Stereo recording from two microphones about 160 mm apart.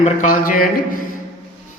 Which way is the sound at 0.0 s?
50° left (ahead or behind).